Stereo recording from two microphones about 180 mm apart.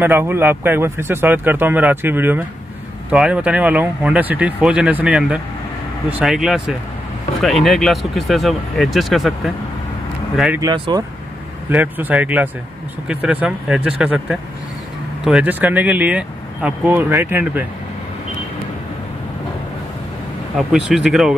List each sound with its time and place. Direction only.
0.0 s speech: 10° right (ahead or behind)
10.6 s speech: 20° right (ahead or behind)
11.7 s speech: 10° right (ahead or behind)
20.5 s speech: 5° right (ahead or behind)